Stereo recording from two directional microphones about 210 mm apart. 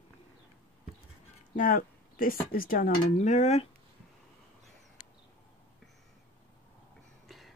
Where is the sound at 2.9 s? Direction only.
35° left (ahead or behind).